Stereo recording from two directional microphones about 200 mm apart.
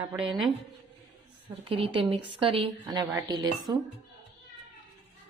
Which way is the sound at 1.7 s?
25° right (ahead or behind).